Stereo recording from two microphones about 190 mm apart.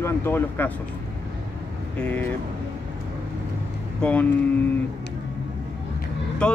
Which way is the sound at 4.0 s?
5° left (ahead or behind).